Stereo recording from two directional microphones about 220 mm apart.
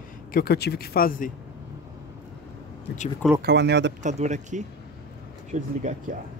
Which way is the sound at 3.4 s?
50° right (ahead or behind).